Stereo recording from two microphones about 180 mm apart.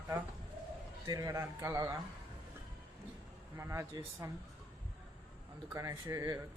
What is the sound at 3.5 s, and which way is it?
Speech, 15° right (ahead or behind).